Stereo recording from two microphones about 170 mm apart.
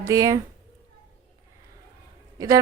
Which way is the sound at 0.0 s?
20° right (ahead or behind).